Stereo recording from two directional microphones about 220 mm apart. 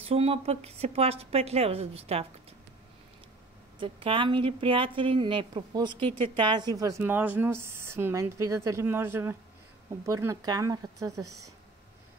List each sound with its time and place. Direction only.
0.1 s a woman's voice: 25° right (ahead or behind)
3.8 s a woman's voice: 25° right (ahead or behind)
11.2 s speech: 90° right